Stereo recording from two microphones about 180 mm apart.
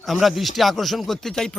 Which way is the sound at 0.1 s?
Centre (ahead or behind).